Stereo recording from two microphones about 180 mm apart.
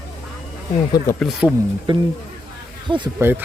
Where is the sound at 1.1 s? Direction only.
Centre (ahead or behind).